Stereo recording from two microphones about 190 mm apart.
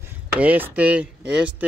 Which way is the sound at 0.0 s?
10° right (ahead or behind).